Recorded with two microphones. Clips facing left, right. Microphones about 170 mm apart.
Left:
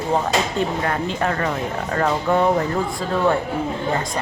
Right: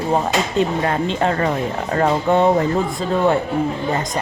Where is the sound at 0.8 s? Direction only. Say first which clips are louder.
Right 3 dB; 25° right (ahead or behind).